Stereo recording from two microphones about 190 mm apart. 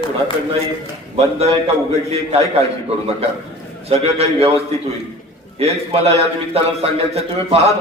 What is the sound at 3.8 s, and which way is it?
A man's voice, 30° right (ahead or behind).